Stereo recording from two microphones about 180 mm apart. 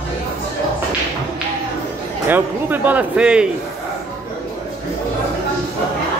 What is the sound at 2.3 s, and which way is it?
Speech, 10° right (ahead or behind).